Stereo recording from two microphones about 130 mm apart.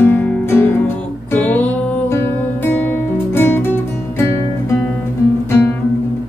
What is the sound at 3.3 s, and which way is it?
Music, 15° left (ahead or behind).